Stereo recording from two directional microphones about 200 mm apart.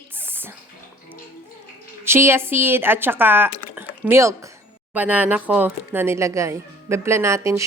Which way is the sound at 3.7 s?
10° right (ahead or behind).